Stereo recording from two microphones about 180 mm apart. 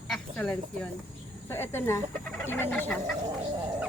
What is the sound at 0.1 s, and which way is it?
Speech, 5° left (ahead or behind).